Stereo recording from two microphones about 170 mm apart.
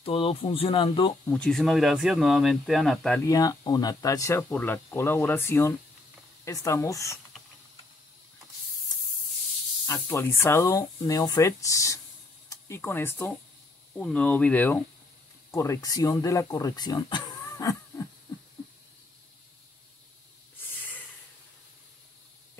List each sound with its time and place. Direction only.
0.0 s speech: 35° left (ahead or behind)
1.2 s speech: 10° left (ahead or behind)
3.2 s speech: 20° left (ahead or behind)
9.8 s speech: 20° left (ahead or behind)